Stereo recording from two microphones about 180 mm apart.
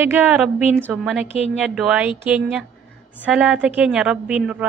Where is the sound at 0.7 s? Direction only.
10° left (ahead or behind).